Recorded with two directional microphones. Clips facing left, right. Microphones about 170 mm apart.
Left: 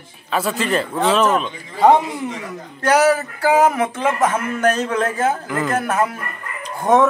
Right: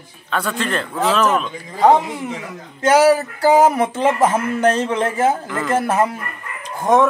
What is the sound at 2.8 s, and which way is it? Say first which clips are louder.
Speech: right 2 dB; 30° right (ahead or behind).